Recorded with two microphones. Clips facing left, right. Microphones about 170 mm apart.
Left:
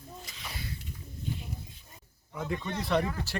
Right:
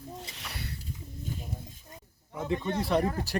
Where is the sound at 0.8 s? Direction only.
45° right (ahead or behind).